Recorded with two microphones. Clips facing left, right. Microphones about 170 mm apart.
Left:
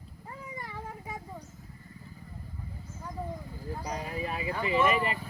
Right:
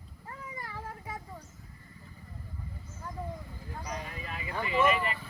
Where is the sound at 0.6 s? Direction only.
10° left (ahead or behind).